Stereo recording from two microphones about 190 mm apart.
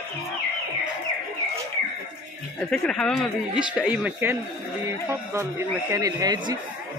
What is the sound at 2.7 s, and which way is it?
Speech, 5° left (ahead or behind).